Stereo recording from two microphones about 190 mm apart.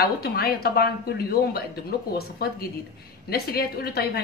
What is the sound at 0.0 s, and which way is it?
Speech, 55° left (ahead or behind).